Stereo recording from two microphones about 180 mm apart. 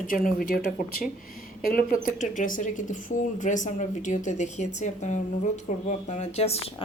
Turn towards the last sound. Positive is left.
turn(degrees=35)  # may be behind; listen again after turning